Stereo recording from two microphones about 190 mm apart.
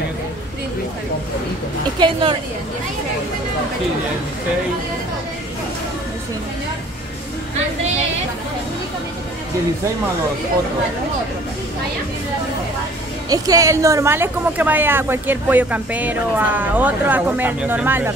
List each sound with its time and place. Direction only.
2.0 s a woman's voice: 25° right (ahead or behind)
13.3 s a woman's voice: 20° right (ahead or behind)